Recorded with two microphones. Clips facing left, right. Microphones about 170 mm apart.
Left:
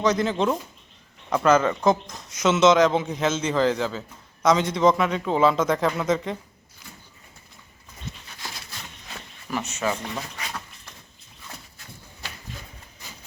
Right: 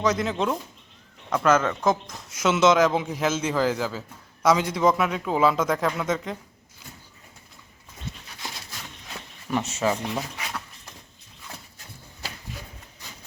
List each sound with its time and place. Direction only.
0.0 s speech: centre (ahead or behind)
9.6 s speech: 25° right (ahead or behind)
10.2 s a sound: 5° right (ahead or behind)